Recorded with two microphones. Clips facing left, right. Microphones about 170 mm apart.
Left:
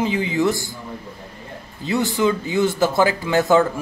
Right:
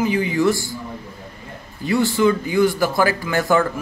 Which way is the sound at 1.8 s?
20° left (ahead or behind).